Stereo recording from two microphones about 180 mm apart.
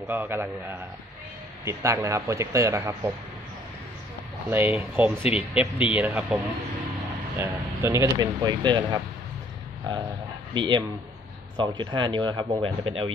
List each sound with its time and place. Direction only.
0.1 s speech: 10° right (ahead or behind)
4.5 s speech: 10° right (ahead or behind); by 9.0 s 25° right (ahead or behind)
10.5 s speech: 25° right (ahead or behind)